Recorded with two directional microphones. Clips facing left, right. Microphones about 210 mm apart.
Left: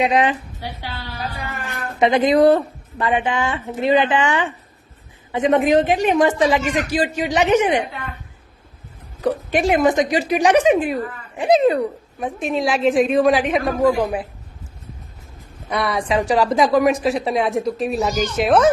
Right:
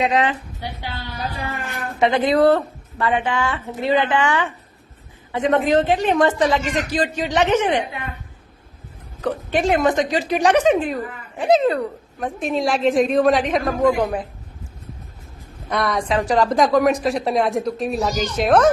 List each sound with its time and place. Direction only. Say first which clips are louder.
0.0 s a woman's voice: left 2 dB; 15° left (ahead or behind)
2.0 s a woman's voice: left 2 dB; 15° left (ahead or behind)
9.2 s a woman's voice: left 2 dB; 10° left (ahead or behind)
12.2 s a woman's voice: even; centre (ahead or behind)
15.7 s a woman's voice: left 1 dB; 5° left (ahead or behind)